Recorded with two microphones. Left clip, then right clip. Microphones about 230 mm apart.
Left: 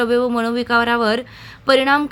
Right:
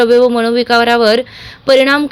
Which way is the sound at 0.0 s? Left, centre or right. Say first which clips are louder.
Right 8 dB; centre.